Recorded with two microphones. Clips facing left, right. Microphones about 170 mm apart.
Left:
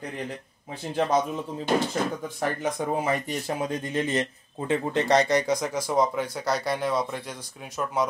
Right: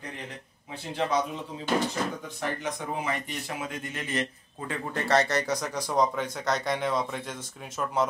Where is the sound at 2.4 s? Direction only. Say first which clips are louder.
Left 5 dB; 40° left (ahead or behind).